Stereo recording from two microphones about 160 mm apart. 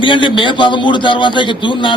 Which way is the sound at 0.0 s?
30° left (ahead or behind).